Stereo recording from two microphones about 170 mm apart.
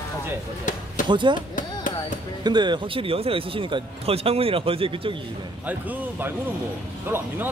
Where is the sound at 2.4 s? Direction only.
25° right (ahead or behind).